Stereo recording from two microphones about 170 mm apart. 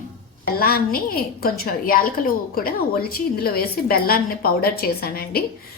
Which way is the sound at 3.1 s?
60° left (ahead or behind).